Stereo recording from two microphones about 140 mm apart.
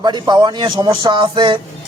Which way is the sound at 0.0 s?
30° right (ahead or behind).